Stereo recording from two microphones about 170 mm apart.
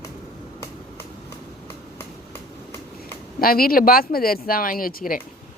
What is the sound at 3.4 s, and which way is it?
Speech, 60° left (ahead or behind).